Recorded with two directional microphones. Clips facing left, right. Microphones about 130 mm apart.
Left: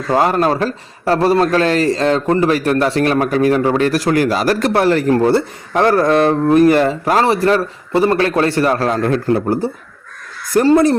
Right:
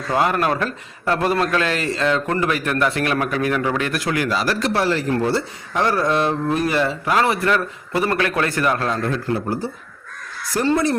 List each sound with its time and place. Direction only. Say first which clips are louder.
0.1 s a man's voice: left 5 dB; 35° left (ahead or behind)
9.0 s speech: left 7 dB; 55° left (ahead or behind)
10.5 s speech: left 8 dB; 45° left (ahead or behind)